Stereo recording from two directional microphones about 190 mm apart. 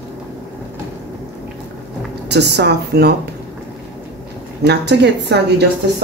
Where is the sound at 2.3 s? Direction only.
60° right (ahead or behind).